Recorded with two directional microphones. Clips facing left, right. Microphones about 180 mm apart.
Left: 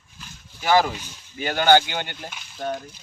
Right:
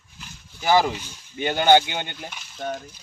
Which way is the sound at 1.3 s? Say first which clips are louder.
Right 1 dB; 20° right (ahead or behind).